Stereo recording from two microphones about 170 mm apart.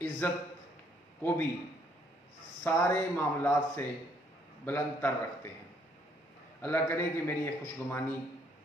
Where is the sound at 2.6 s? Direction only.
15° left (ahead or behind).